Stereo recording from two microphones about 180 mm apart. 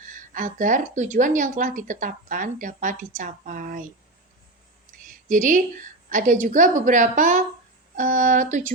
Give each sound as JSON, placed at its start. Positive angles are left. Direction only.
{"t": 0.3, "sound": "speech", "side_deg": -50}
{"t": 5.3, "sound": "speech", "side_deg": -45}